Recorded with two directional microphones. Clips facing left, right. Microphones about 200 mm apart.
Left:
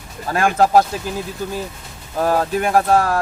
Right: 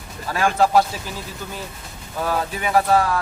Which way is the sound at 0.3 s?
45° left (ahead or behind).